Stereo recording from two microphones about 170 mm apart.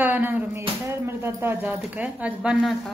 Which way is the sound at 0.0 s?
10° right (ahead or behind).